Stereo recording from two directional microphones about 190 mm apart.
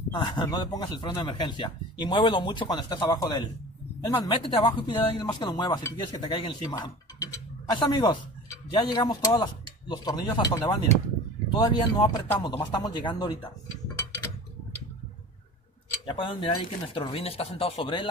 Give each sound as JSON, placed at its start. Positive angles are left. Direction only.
{"t": 0.1, "sound": "speech", "side_deg": 25}
{"t": 16.1, "sound": "speech", "side_deg": 25}